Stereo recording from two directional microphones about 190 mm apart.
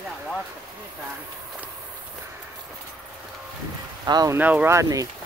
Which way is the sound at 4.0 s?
20° right (ahead or behind).